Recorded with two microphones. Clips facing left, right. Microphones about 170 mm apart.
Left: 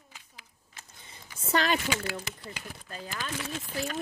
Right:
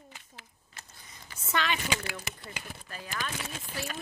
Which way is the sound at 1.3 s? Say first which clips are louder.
Left 4 dB; 35° left (ahead or behind).